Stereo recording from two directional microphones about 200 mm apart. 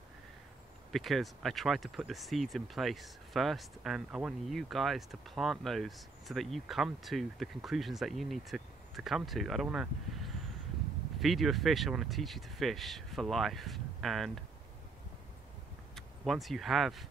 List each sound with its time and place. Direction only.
0.9 s speech: centre (ahead or behind)
11.1 s speech: centre (ahead or behind)
15.9 s speech: centre (ahead or behind)